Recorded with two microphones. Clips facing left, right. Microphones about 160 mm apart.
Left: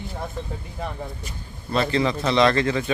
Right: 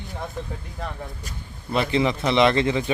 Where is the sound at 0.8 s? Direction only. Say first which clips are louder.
Left 2 dB; 5° left (ahead or behind).